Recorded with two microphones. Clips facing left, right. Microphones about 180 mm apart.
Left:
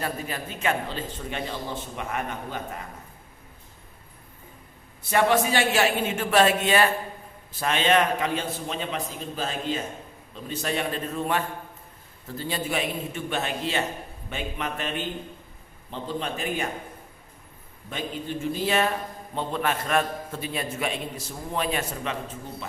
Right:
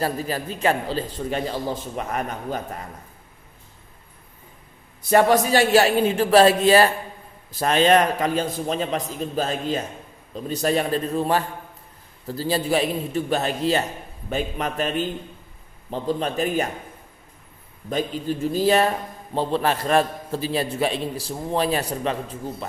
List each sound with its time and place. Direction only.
0.0 s a man's voice: 35° right (ahead or behind)
5.0 s a man's voice: 40° right (ahead or behind)
17.8 s a man's voice: 40° right (ahead or behind)